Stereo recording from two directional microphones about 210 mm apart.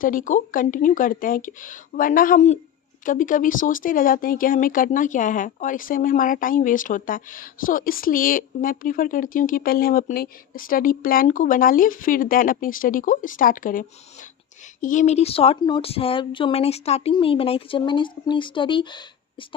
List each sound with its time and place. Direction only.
0.0 s speech: 40° left (ahead or behind); by 19.5 s 20° left (ahead or behind)